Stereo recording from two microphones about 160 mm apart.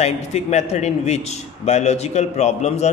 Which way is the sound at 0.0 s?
40° left (ahead or behind).